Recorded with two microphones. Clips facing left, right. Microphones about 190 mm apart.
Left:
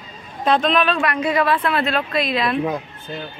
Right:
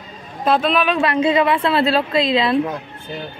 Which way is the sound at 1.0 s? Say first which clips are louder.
Right 4 dB; 25° right (ahead or behind).